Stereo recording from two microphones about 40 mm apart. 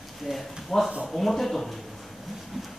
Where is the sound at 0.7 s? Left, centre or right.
Centre.